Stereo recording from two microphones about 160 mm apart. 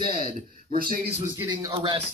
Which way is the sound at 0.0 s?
65° right (ahead or behind).